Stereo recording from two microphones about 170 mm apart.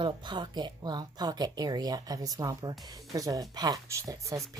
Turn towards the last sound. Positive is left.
turn(degrees=-20)  # may be behind; listen again after turning